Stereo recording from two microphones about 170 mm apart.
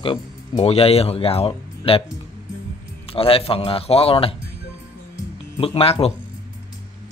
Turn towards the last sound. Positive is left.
turn(degrees=35)  # may be behind; listen again after turning